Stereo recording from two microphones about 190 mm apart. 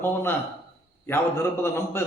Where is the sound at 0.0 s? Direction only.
10° left (ahead or behind).